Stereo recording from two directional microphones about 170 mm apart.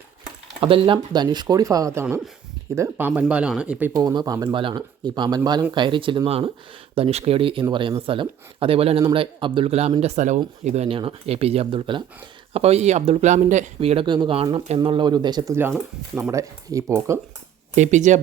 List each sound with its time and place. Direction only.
0.6 s speech: 30° right (ahead or behind); by 3.9 s 10° right (ahead or behind)
3.9 s speech: 25° right (ahead or behind)
17.7 s speech: 45° right (ahead or behind)